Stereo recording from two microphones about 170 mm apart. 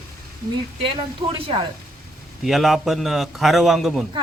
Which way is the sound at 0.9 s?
30° right (ahead or behind).